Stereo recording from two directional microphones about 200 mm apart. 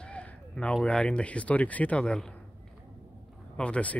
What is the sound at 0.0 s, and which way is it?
Speech, 5° left (ahead or behind).